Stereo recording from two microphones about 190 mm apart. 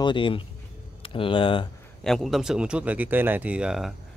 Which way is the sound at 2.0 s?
Centre (ahead or behind).